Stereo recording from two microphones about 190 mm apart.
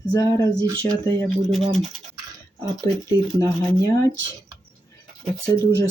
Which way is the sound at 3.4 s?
20° left (ahead or behind).